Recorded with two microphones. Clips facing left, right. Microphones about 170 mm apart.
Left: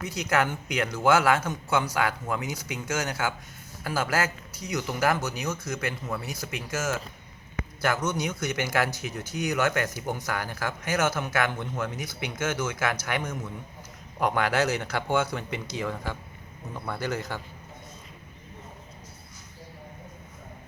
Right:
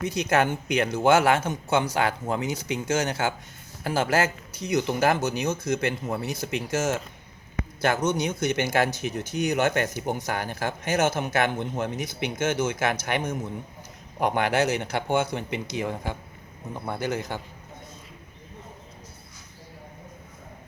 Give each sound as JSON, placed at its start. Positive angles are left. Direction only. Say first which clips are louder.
{"t": 0.0, "sound": "speech", "louder": "right 3 dB", "side_deg": -25}